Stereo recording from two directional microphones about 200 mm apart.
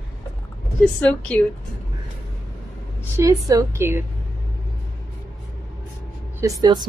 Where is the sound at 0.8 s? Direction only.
5° left (ahead or behind).